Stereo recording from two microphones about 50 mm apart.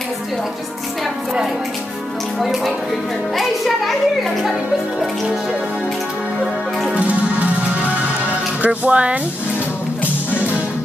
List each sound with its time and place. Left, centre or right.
2.3 s a child's voice: centre
6.9 s music: right
8.6 s speech: right